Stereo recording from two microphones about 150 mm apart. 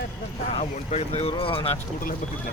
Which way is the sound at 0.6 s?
45° left (ahead or behind).